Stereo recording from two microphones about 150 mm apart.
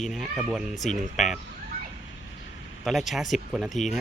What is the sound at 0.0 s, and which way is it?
A man's voice, centre (ahead or behind).